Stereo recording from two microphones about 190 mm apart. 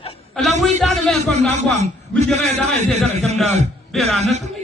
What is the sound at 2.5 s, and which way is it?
Speech, 35° right (ahead or behind).